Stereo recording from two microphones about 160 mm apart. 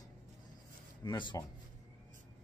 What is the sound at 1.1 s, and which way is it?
Speech, 30° left (ahead or behind).